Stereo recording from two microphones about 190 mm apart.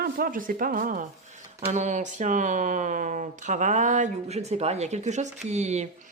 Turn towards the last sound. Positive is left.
turn(degrees=-35)  # may be behind; listen again after turning